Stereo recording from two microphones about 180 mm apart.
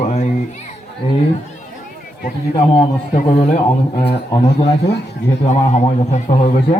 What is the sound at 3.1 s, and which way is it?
Speech, 40° left (ahead or behind).